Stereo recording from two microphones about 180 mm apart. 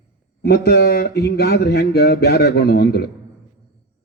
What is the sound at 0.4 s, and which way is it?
Speech, 60° left (ahead or behind).